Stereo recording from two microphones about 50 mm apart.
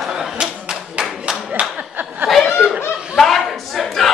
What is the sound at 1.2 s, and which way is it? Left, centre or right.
Clapping, centre.